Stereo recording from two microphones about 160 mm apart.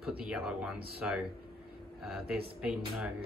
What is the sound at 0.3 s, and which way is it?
Speech, 5° right (ahead or behind).